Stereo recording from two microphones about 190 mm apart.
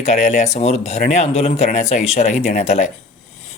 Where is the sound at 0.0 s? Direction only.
35° left (ahead or behind).